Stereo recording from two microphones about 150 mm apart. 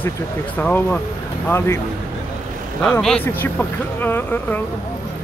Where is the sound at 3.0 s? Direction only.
10° left (ahead or behind).